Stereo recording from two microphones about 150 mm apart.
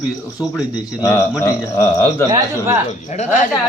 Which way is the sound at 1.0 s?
15° left (ahead or behind).